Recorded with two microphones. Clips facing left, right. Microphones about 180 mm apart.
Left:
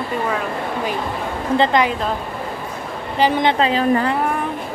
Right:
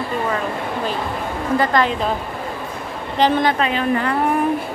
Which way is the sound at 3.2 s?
10° left (ahead or behind).